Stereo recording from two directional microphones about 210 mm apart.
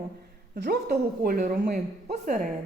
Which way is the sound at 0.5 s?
50° right (ahead or behind).